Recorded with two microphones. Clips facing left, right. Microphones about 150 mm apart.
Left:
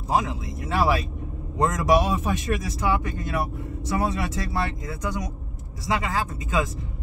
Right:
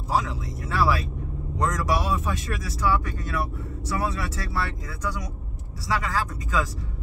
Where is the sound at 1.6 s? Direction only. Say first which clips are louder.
Left 5 dB; 20° left (ahead or behind).